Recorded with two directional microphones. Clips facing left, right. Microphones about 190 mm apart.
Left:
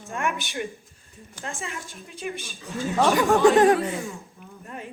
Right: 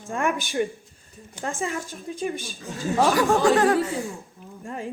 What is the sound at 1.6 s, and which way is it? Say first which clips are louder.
Speech: right 7 dB; 35° right (ahead or behind).